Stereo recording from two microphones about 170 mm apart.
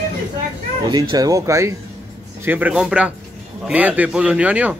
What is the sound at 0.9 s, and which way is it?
Speech, 25° right (ahead or behind).